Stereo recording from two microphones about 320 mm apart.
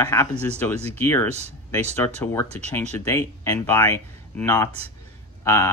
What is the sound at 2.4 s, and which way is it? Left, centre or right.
Speech, centre.